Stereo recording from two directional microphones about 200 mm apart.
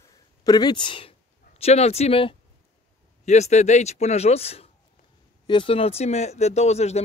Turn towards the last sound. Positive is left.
turn(degrees=35)  # may be behind; listen again after turning